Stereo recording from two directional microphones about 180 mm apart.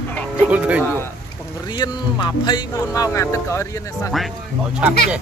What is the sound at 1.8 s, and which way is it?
Speech, 25° left (ahead or behind).